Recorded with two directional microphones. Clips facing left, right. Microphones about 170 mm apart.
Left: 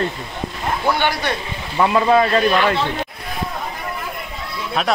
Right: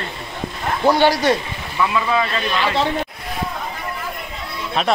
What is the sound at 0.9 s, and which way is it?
Speech, 40° right (ahead or behind).